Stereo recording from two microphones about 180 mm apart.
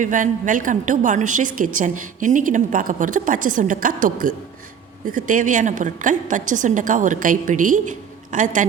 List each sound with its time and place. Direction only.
0.0 s a woman's voice: 45° right (ahead or behind)